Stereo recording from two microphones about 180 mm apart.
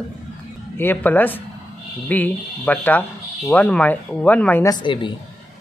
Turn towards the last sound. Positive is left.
turn(degrees=25)  # may be behind; listen again after turning